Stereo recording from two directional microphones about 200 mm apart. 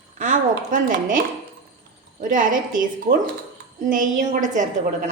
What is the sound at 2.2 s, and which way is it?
A woman's voice, 40° right (ahead or behind).